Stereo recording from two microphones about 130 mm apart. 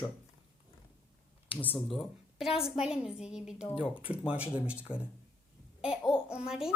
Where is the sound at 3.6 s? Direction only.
45° left (ahead or behind).